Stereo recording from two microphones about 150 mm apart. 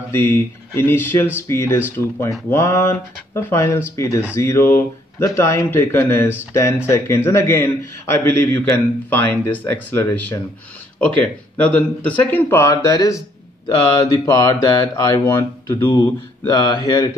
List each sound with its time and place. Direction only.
0.1 s a man's voice: 15° left (ahead or behind)
13.7 s mantra: 25° left (ahead or behind)